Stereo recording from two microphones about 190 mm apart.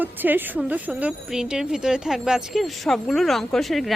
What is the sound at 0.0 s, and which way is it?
A woman's voice, 10° right (ahead or behind).